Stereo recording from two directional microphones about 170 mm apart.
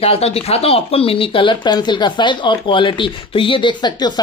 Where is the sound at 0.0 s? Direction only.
35° left (ahead or behind).